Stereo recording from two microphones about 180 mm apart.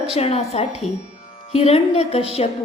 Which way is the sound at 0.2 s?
35° left (ahead or behind).